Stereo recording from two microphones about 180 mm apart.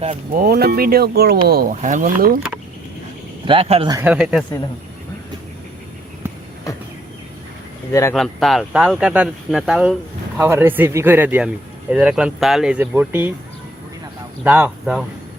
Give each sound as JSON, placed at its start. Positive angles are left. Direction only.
{"t": 0.3, "sound": "speech", "side_deg": -60}
{"t": 3.4, "sound": "speech", "side_deg": -30}
{"t": 3.9, "sound": "speech", "side_deg": -10}
{"t": 8.1, "sound": "speech", "side_deg": 0}
{"t": 14.4, "sound": "speech", "side_deg": -10}